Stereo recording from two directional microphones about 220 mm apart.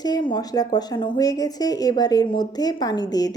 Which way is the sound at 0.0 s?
20° left (ahead or behind).